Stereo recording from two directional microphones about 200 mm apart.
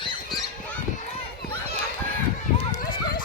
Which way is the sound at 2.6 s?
30° left (ahead or behind).